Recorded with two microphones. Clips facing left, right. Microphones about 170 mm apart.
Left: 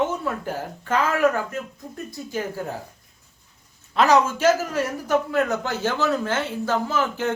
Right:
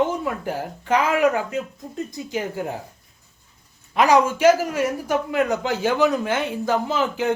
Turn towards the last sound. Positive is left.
turn(degrees=-15)  # may be behind; listen again after turning